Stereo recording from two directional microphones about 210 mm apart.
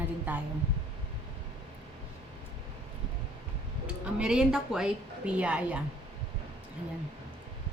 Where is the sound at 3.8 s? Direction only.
5° right (ahead or behind).